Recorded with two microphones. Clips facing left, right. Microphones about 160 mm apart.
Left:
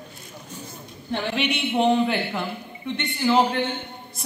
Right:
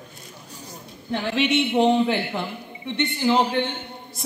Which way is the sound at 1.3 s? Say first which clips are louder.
Right 5 dB; 25° right (ahead or behind).